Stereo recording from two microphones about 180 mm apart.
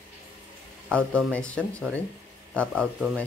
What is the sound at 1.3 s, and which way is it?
Speech, 5° left (ahead or behind).